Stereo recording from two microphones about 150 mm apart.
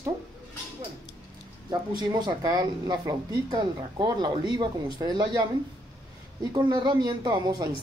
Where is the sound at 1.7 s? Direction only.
30° right (ahead or behind).